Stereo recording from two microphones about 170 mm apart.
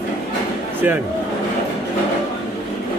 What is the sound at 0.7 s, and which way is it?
Speech, 10° right (ahead or behind).